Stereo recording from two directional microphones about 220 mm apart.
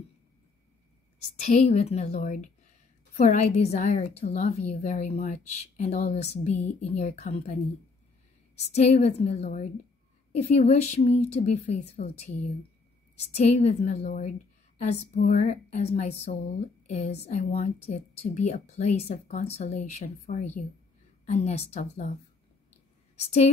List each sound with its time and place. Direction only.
1.3 s speech: 30° left (ahead or behind)
8.5 s a woman's voice: 30° left (ahead or behind)